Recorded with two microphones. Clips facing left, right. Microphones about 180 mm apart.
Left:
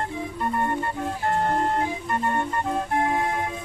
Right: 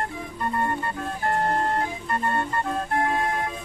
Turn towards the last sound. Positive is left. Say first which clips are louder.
# left 1 dB
turn(degrees=15)  # may be behind; listen again after turning